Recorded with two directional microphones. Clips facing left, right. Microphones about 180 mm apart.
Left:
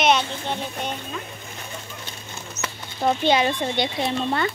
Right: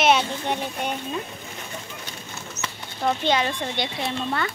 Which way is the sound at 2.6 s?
10° right (ahead or behind).